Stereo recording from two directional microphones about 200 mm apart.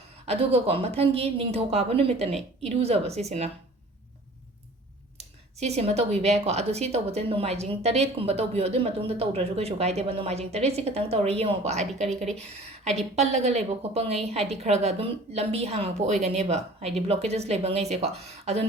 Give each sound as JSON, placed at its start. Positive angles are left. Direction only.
{"t": 0.3, "sound": "a woman's voice", "side_deg": -30}
{"t": 5.1, "sound": "speech", "side_deg": -35}